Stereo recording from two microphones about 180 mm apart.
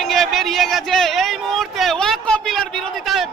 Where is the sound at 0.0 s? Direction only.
Centre (ahead or behind).